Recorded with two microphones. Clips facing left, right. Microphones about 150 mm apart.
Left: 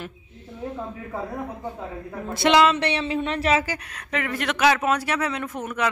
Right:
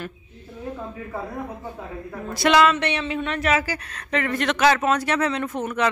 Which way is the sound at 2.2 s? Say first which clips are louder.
Even; 25° left (ahead or behind).